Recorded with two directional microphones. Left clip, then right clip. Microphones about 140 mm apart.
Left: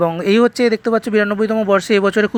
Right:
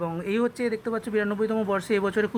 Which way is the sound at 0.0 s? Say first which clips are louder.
Left 13 dB; 40° left (ahead or behind).